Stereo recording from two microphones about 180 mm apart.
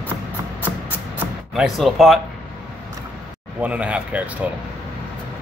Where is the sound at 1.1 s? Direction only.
5° right (ahead or behind).